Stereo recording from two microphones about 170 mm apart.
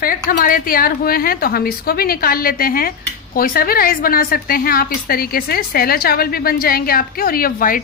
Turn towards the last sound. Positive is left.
turn(degrees=55)  # may be behind; listen again after turning